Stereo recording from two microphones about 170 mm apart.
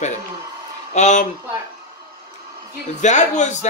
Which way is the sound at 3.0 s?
45° left (ahead or behind).